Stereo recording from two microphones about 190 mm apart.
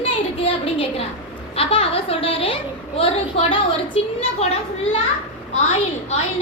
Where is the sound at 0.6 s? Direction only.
30° left (ahead or behind).